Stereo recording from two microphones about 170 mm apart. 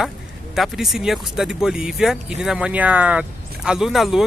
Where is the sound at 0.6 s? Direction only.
Centre (ahead or behind).